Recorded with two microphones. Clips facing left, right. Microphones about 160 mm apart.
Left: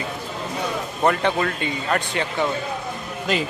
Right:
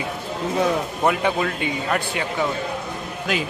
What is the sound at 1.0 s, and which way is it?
A man's voice, 5° right (ahead or behind).